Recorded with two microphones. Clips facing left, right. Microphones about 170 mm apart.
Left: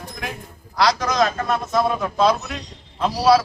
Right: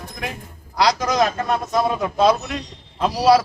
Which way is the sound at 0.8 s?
15° right (ahead or behind).